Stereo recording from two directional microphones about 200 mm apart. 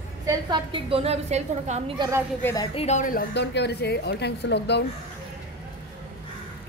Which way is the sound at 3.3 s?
60° left (ahead or behind).